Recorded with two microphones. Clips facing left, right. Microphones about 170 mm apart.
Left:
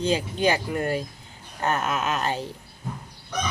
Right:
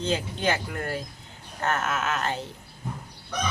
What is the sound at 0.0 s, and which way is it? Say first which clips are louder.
Speech: left 4 dB; 15° left (ahead or behind).